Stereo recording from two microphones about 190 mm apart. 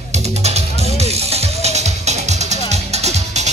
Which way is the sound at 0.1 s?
35° right (ahead or behind).